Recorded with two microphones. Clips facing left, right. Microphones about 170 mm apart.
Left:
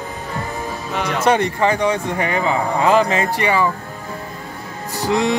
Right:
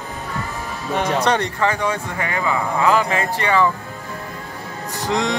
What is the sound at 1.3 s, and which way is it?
Speech, 20° left (ahead or behind).